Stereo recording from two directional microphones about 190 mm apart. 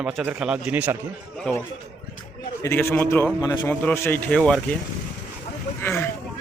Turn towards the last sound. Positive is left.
turn(degrees=10)  # may be behind; listen again after turning